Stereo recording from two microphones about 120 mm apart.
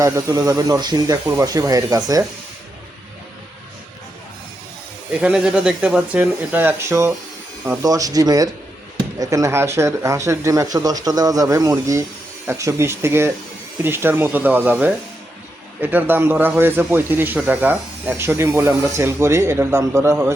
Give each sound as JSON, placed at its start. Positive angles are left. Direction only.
{"t": 0.0, "sound": "speech", "side_deg": -30}
{"t": 5.2, "sound": "speech", "side_deg": -5}